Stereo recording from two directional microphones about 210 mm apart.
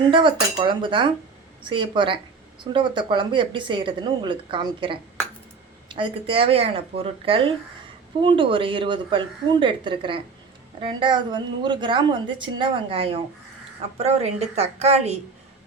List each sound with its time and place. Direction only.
0.1 s a woman's voice: 25° right (ahead or behind)